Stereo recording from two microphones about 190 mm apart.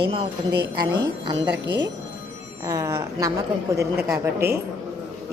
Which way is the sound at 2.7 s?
15° right (ahead or behind).